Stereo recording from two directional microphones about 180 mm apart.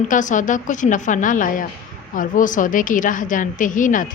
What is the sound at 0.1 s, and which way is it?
A woman's voice, 45° left (ahead or behind).